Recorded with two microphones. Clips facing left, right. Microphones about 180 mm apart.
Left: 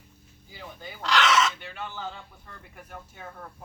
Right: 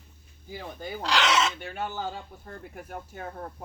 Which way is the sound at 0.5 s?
45° right (ahead or behind).